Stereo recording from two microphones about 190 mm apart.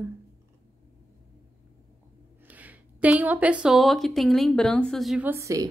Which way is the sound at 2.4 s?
10° right (ahead or behind).